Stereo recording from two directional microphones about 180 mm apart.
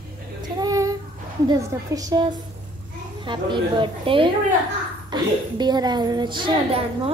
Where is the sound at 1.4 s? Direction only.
20° right (ahead or behind).